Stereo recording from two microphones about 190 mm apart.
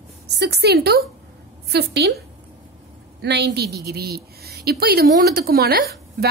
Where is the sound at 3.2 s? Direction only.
60° right (ahead or behind).